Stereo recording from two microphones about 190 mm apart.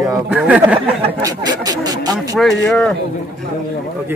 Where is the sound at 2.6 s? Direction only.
5° left (ahead or behind).